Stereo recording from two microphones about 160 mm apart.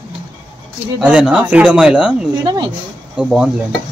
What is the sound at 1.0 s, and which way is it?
Speech, 10° right (ahead or behind).